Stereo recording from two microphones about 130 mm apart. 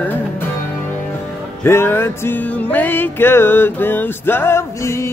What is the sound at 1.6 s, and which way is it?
Music, 20° left (ahead or behind).